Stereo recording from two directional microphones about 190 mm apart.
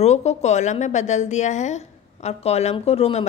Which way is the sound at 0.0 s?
35° left (ahead or behind).